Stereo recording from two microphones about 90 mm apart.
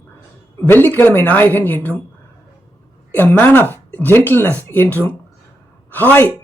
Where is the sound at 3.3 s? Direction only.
20° left (ahead or behind).